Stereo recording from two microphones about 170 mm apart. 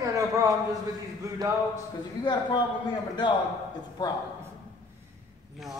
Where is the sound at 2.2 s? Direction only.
25° left (ahead or behind).